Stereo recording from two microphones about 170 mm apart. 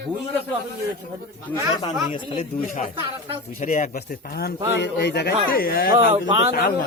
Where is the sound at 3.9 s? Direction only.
65° left (ahead or behind).